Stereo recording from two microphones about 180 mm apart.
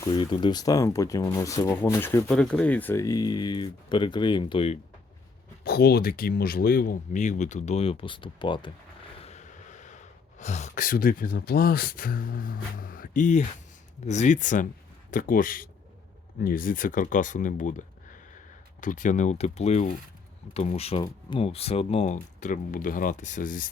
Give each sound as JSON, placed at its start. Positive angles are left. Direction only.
{"t": 0.0, "sound": "speech", "side_deg": 25}
{"t": 5.6, "sound": "speech", "side_deg": 60}
{"t": 9.1, "sound": "speech", "side_deg": 35}